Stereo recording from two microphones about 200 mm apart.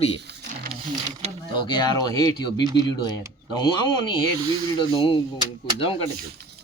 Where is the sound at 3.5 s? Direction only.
20° left (ahead or behind).